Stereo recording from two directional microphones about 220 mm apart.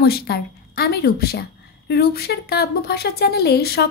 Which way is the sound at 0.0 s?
45° left (ahead or behind).